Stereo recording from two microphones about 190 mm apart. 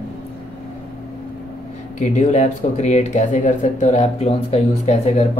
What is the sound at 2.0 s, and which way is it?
Speech, 40° left (ahead or behind).